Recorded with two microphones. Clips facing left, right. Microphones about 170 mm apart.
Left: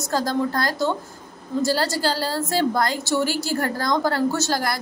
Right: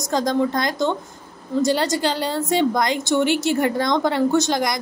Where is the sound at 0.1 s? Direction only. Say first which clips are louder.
Right 3 dB; 5° left (ahead or behind).